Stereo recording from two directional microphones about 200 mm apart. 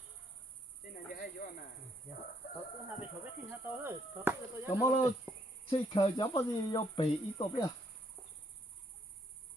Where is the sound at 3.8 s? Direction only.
10° right (ahead or behind).